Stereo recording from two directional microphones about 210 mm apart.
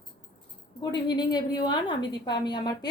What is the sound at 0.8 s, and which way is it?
A woman's voice, 20° left (ahead or behind).